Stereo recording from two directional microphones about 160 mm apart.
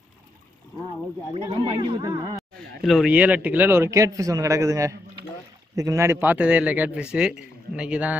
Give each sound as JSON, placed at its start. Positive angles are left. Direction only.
{"t": 1.3, "sound": "speech", "side_deg": -30}
{"t": 2.8, "sound": "a man's voice", "side_deg": 0}